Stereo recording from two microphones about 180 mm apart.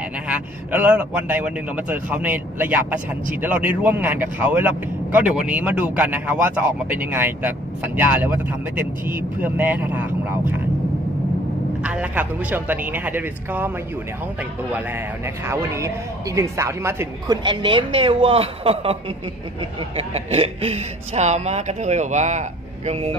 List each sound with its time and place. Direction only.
0.3 s speech: 10° right (ahead or behind)
11.8 s speech: 5° right (ahead or behind)
15.2 s speech: 15° right (ahead or behind); by 18.9 s 30° right (ahead or behind)
20.0 s speech: 35° right (ahead or behind)